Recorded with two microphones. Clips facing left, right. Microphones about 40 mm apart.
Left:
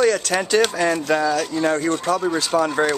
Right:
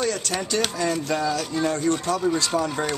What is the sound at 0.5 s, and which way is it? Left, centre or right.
Speech, left.